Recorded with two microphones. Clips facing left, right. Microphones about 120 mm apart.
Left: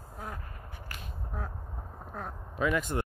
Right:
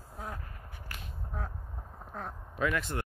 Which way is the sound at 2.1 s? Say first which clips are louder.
Left 1 dB; 10° left (ahead or behind).